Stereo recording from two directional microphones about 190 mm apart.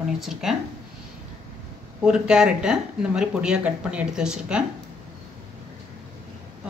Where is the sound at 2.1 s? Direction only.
5° right (ahead or behind).